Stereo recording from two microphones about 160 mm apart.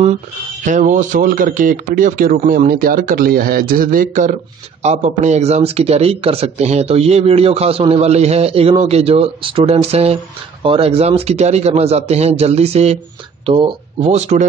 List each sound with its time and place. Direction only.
0.7 s speech: 50° right (ahead or behind); by 14.0 s 35° right (ahead or behind)
14.0 s speech: 45° right (ahead or behind)